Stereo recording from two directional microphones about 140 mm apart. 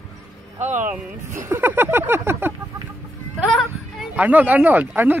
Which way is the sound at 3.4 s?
Centre (ahead or behind).